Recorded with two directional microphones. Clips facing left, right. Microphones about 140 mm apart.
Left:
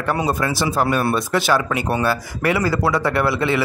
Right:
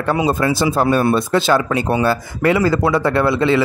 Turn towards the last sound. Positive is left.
turn(degrees=-20)  # may be behind; listen again after turning